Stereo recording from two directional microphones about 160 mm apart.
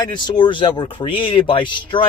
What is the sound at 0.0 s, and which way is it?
Speech, 30° left (ahead or behind).